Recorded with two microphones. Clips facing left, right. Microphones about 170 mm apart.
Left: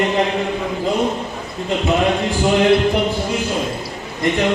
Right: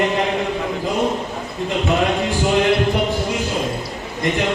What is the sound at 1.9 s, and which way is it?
Speech, centre (ahead or behind).